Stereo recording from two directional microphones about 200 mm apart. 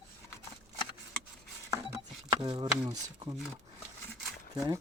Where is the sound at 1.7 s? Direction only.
15° right (ahead or behind).